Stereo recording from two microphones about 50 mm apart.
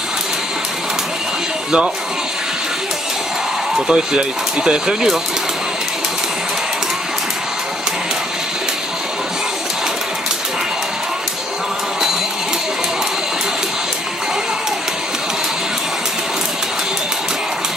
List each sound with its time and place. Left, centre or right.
3.8 s speech: centre